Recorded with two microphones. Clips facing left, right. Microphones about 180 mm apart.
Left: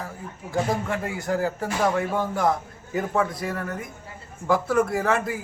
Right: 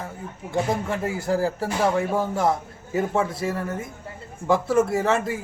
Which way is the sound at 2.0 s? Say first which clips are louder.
Right 1 dB; 25° right (ahead or behind).